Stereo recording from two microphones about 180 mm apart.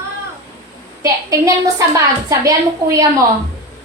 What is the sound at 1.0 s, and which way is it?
A woman's voice, 15° right (ahead or behind).